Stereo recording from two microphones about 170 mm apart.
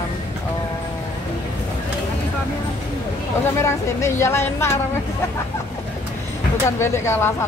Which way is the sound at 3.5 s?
15° left (ahead or behind).